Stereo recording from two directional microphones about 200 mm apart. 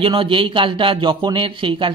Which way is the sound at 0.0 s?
25° right (ahead or behind).